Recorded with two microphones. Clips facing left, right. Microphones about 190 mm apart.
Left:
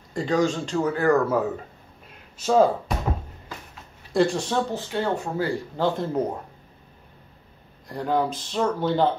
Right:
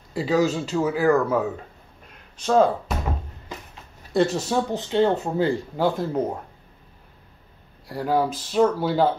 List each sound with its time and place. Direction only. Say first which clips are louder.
0.1 s speech: right 1 dB; 5° right (ahead or behind)
4.1 s speech: right 1 dB; 5° right (ahead or behind)
4.7 s speech: right 5 dB; 20° right (ahead or behind)
5.8 s speech: even; 10° right (ahead or behind)
7.9 s speech: right 1 dB; 5° right (ahead or behind)